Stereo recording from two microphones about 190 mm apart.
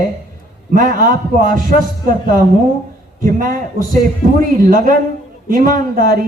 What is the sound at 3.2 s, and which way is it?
Speech, 45° right (ahead or behind).